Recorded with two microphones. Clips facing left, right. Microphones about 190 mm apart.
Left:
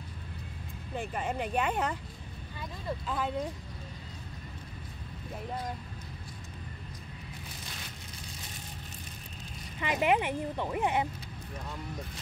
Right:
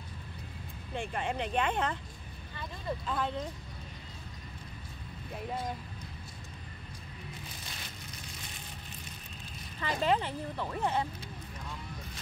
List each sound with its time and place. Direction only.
0.9 s speech: 5° left (ahead or behind)
3.1 s speech: 5° left (ahead or behind)
9.8 s speech: 15° left (ahead or behind)